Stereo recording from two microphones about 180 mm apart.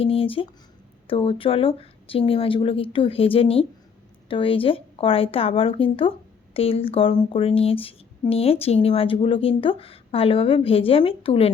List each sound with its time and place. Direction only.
0.0 s speech: 30° left (ahead or behind)